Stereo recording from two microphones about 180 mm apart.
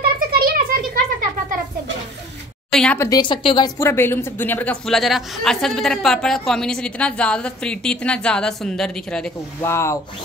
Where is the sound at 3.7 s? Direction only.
15° left (ahead or behind).